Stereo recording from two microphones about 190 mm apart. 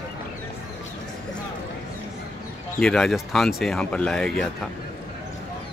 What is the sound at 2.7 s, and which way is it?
Speech, 5° left (ahead or behind).